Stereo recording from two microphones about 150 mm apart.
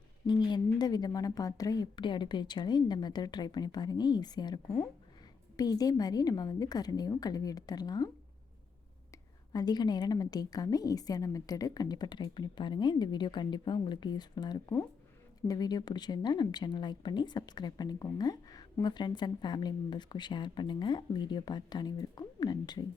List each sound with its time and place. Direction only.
0.3 s a woman's voice: 30° left (ahead or behind)
9.5 s a woman's voice: 25° left (ahead or behind)